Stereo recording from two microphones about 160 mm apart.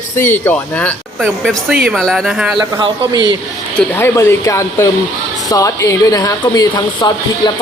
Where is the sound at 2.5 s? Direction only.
30° right (ahead or behind).